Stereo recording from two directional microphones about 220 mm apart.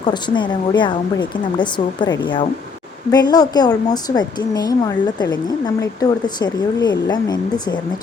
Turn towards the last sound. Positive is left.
turn(degrees=20)  # may be behind; listen again after turning